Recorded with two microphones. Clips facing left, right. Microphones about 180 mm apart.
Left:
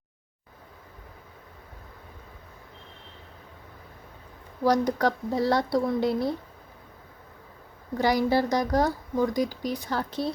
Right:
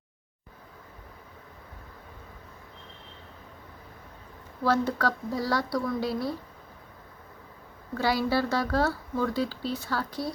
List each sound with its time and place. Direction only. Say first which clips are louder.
4.6 s speech: left 3 dB; 15° left (ahead or behind)
7.9 s speech: left 3 dB; 15° left (ahead or behind)